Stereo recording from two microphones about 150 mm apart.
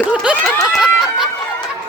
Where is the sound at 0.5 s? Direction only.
Centre (ahead or behind).